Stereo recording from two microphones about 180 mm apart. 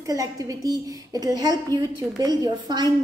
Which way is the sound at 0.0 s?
20° right (ahead or behind).